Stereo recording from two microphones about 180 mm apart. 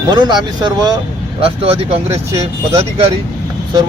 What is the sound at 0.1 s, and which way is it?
Speech, 25° right (ahead or behind).